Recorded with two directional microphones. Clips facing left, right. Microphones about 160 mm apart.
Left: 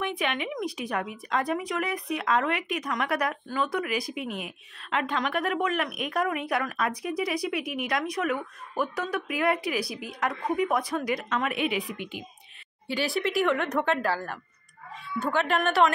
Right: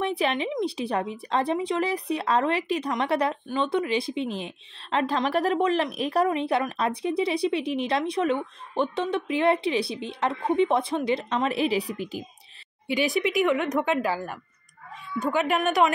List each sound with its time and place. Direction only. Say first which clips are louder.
0.0 s a woman's voice: right 4 dB; 35° right (ahead or behind)
12.9 s a woman's voice: right 3 dB; 20° right (ahead or behind)